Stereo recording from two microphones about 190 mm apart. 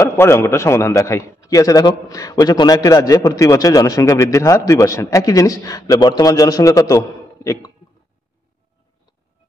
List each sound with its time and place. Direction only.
0.0 s a man's voice: 15° left (ahead or behind)